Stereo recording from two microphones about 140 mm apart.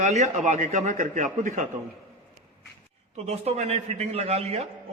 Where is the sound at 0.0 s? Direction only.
55° right (ahead or behind).